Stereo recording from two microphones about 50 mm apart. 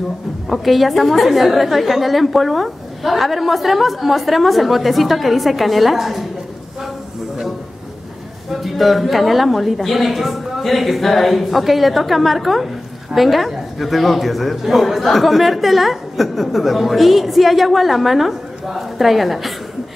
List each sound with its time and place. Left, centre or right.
0.5 s a woman's voice: centre
8.5 s a woman's voice: centre